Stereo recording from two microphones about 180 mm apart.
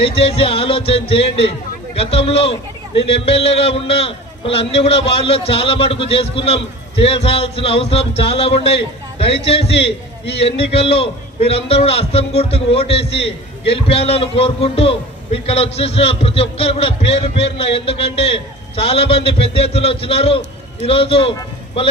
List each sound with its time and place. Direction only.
0.0 s a man's voice: 35° left (ahead or behind)